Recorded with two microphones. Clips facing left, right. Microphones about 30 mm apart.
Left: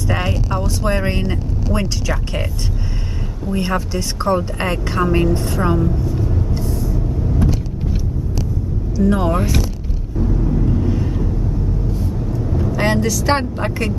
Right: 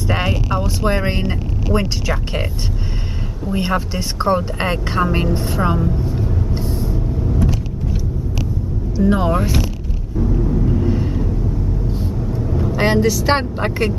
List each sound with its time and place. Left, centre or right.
0.1 s speech: centre
3.4 s speech: centre
6.2 s vehicle: right
8.9 s speech: right
9.2 s speech: centre
10.3 s vehicle: centre
11.9 s vehicle: right
12.4 s vehicle: centre
12.7 s speech: centre